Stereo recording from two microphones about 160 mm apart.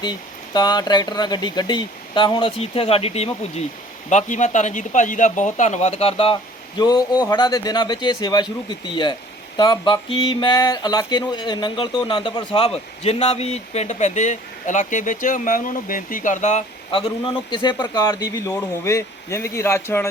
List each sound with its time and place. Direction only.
0.0 s speech: 25° left (ahead or behind)
9.6 s speech: 30° left (ahead or behind); by 16.6 s 50° left (ahead or behind)
16.9 s speech: 30° left (ahead or behind); by 20.1 s 15° left (ahead or behind)